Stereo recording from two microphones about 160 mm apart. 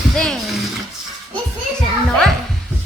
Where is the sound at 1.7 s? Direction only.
5° left (ahead or behind).